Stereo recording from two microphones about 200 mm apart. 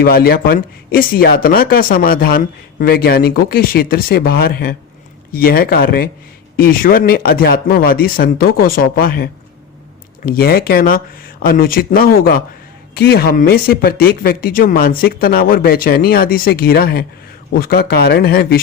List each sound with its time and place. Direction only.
0.0 s speech: 50° left (ahead or behind)